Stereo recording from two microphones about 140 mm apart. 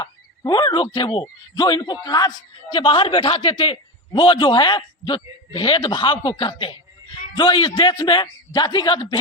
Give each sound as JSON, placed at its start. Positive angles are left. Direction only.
{"t": 0.0, "sound": "speech", "side_deg": 30}